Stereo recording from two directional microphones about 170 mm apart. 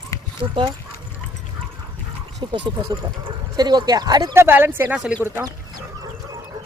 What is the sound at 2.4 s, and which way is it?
Speech, 30° right (ahead or behind).